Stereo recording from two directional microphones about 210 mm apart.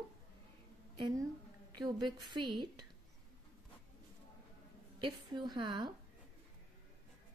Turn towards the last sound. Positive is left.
turn(degrees=-20)  # may be behind; listen again after turning